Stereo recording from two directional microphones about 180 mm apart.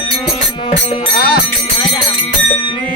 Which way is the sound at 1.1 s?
60° left (ahead or behind).